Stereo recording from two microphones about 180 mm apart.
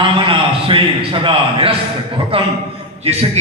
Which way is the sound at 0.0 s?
30° right (ahead or behind).